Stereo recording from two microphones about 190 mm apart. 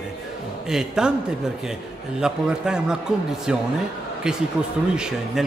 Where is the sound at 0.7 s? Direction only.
5° right (ahead or behind).